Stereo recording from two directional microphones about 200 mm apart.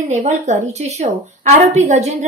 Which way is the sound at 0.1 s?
35° right (ahead or behind).